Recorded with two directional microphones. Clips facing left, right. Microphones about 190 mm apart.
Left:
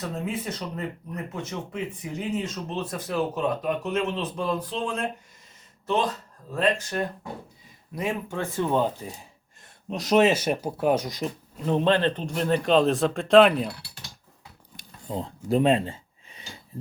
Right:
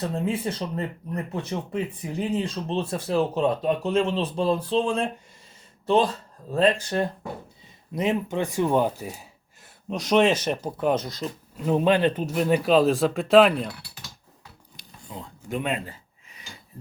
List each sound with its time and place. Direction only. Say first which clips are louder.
0.0 s speech: right 4 dB; 30° right (ahead or behind)
7.9 s speech: right 4 dB; 20° right (ahead or behind); by 11.3 s 15° left (ahead or behind)
11.5 s a man's voice: right 2 dB; 5° right (ahead or behind)
15.1 s speech: left 7 dB; 35° left (ahead or behind)